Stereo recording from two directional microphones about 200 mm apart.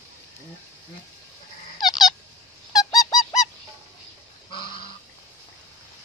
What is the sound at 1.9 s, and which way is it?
Squeak, 20° left (ahead or behind).